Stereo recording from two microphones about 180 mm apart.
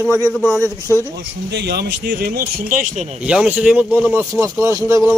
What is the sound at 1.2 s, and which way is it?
Speech, 65° right (ahead or behind).